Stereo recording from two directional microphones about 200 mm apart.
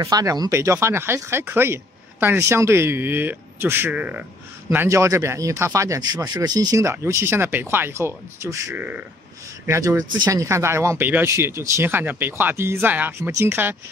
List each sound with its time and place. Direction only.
0.0 s speech: 15° right (ahead or behind)